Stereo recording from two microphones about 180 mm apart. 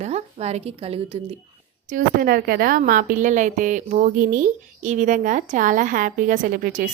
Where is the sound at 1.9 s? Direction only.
50° right (ahead or behind).